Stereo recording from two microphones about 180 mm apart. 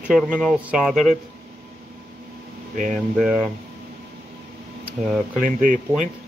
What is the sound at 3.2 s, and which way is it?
Speech, 5° right (ahead or behind).